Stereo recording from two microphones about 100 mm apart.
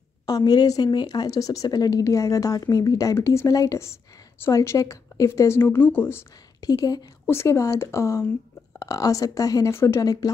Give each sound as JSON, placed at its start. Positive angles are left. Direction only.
{"t": 0.3, "sound": "speech", "side_deg": 40}
{"t": 6.6, "sound": "speech", "side_deg": 40}
{"t": 7.2, "sound": "speech", "side_deg": 25}